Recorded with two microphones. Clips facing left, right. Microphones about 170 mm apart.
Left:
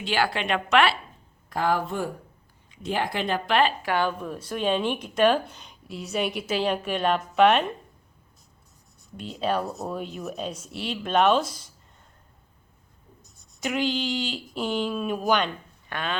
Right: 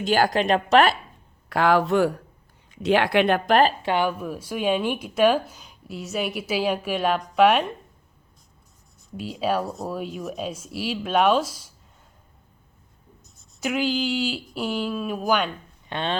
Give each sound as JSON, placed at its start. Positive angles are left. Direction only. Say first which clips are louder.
{"t": 0.0, "sound": "a woman's voice", "louder": "right 5 dB", "side_deg": -45}
{"t": 1.5, "sound": "speech", "louder": "right 6 dB", "side_deg": -80}
{"t": 3.8, "sound": "speech", "louder": "right 2 dB", "side_deg": -15}
{"t": 9.1, "sound": "speech", "louder": "right 2 dB", "side_deg": -5}
{"t": 13.2, "sound": "speech", "louder": "right 3 dB", "side_deg": 0}
{"t": 15.9, "sound": "speech", "louder": "right 4 dB", "side_deg": -25}